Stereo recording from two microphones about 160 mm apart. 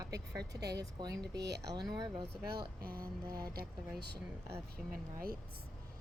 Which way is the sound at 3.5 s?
80° right.